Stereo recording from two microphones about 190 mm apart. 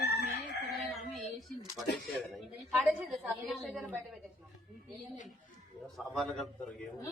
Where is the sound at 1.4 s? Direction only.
Centre (ahead or behind).